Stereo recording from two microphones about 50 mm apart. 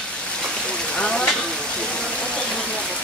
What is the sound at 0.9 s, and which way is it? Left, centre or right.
Frying, centre.